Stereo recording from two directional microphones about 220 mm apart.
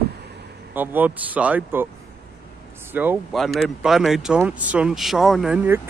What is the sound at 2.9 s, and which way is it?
Speech, 10° right (ahead or behind).